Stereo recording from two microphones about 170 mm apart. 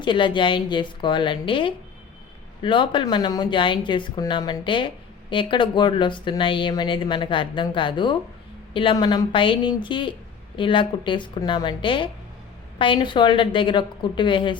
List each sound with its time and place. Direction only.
0.0 s speech: 30° left (ahead or behind)